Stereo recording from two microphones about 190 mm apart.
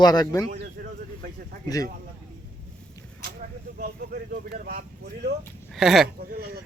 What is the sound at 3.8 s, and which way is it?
Speech, 50° right (ahead or behind).